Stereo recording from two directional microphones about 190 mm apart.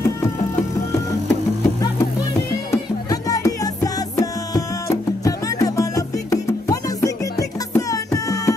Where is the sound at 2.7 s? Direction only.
15° left (ahead or behind).